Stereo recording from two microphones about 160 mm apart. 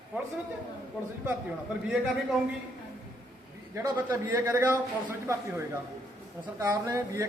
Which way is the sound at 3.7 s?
15° right (ahead or behind).